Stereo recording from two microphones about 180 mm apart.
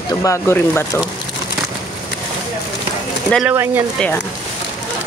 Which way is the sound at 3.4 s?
15° right (ahead or behind).